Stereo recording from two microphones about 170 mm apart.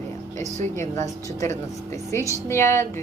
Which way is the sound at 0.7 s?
15° left (ahead or behind).